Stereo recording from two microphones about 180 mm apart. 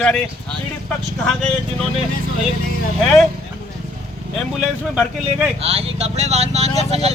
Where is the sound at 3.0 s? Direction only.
Centre (ahead or behind).